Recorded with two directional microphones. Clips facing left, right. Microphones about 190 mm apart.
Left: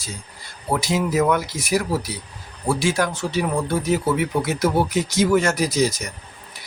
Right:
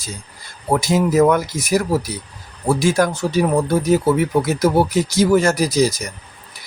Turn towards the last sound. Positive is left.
turn(degrees=-35)  # may be behind; listen again after turning